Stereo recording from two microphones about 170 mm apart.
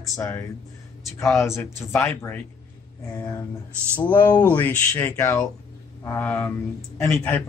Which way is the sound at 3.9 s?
10° left (ahead or behind).